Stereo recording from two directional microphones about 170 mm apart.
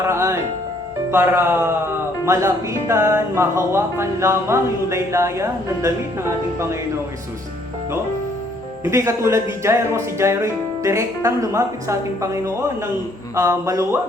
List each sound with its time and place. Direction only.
0.1 s music: 15° right (ahead or behind)
1.1 s speech: 15° right (ahead or behind)
8.8 s speech: 15° right (ahead or behind)